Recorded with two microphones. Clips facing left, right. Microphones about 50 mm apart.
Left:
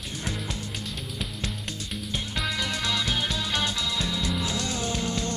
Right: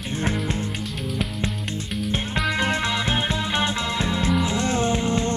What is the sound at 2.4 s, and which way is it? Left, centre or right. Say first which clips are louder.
Music: right 7 dB; right.